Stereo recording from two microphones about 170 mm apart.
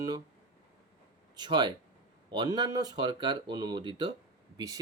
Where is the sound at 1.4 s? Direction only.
25° right (ahead or behind).